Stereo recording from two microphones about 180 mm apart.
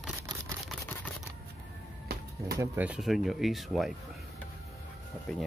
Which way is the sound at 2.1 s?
60° right (ahead or behind).